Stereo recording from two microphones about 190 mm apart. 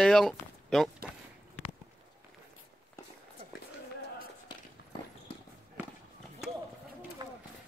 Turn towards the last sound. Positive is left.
turn(degrees=-25)  # may be behind; listen again after turning